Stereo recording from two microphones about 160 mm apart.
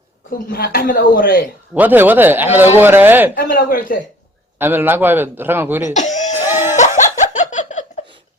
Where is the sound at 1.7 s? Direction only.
10° right (ahead or behind).